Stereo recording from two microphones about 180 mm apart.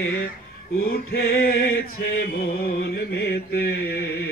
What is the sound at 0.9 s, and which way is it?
Chant, 60° left (ahead or behind).